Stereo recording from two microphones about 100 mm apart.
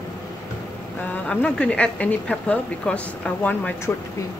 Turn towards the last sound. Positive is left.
turn(degrees=15)  # may be behind; listen again after turning